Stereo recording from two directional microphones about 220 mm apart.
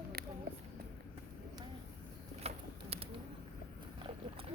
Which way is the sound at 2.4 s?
30° right (ahead or behind).